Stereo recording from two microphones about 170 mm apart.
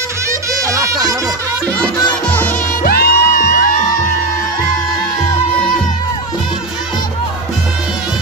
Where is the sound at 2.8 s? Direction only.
60° left (ahead or behind).